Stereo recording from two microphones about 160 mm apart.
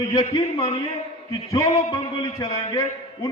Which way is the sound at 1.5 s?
20° left (ahead or behind).